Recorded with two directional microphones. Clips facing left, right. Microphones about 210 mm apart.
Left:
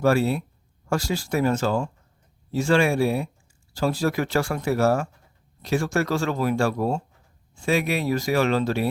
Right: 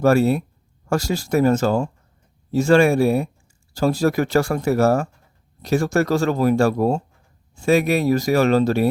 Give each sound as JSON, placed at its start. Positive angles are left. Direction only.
{"t": 0.0, "sound": "speech", "side_deg": -45}